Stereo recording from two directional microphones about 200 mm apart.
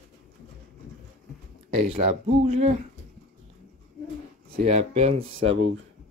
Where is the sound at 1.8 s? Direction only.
30° right (ahead or behind).